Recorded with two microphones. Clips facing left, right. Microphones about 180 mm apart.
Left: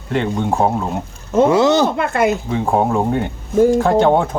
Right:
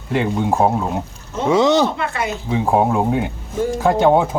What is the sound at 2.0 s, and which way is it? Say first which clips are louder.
Speech: left 7 dB; 50° left (ahead or behind).